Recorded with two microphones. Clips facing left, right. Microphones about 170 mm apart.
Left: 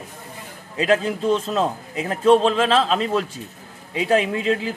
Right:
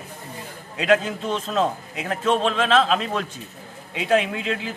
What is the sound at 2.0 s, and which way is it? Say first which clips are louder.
Speech: left 7 dB; 35° left (ahead or behind).